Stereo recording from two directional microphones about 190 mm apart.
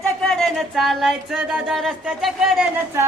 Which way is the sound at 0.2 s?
5° left (ahead or behind).